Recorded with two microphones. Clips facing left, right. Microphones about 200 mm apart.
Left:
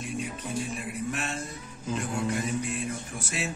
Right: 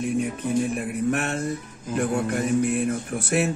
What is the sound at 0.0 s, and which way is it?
Speech, 60° right (ahead or behind).